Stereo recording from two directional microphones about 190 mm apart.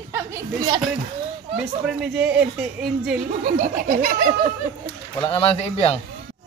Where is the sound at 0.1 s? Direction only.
15° right (ahead or behind).